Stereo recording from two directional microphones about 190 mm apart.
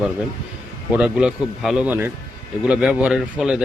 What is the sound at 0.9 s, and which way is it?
Speech, 5° right (ahead or behind).